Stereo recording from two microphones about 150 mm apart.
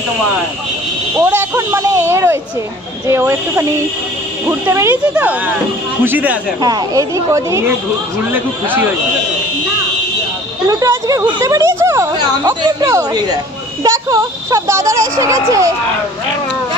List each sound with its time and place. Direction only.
1.1 s speech: 10° right (ahead or behind)
6.0 s speech: 10° right (ahead or behind)
6.6 s speech: 25° right (ahead or behind)
10.7 s speech: 20° right (ahead or behind)